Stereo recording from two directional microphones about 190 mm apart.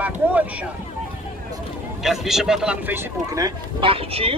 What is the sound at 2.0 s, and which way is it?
Speech, centre (ahead or behind).